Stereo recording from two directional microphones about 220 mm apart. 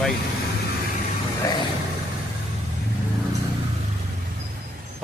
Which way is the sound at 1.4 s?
15° left (ahead or behind).